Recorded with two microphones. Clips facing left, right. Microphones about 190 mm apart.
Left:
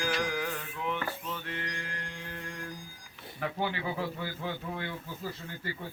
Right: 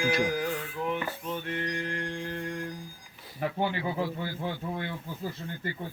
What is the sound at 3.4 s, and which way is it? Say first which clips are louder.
Speech: right 3 dB; 20° right (ahead or behind).